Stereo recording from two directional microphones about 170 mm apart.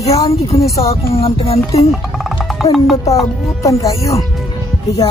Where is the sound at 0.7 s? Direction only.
20° left (ahead or behind).